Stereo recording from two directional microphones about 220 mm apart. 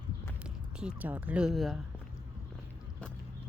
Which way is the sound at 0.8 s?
5° right (ahead or behind).